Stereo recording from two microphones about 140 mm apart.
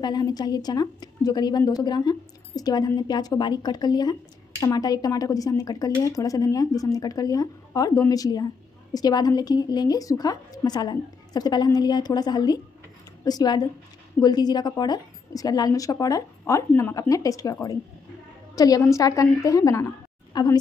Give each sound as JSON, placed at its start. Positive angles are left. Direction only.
{"t": 0.0, "sound": "a woman's voice", "side_deg": 30}